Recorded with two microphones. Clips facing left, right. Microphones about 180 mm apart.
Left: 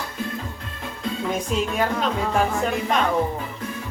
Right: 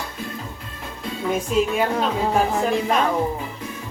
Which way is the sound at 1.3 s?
5° right (ahead or behind).